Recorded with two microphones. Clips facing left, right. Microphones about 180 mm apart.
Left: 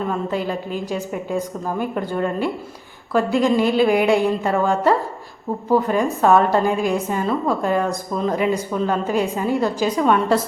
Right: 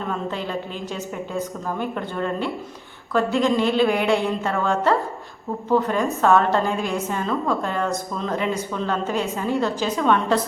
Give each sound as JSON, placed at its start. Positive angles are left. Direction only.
{"t": 0.1, "sound": "a woman's voice", "side_deg": 10}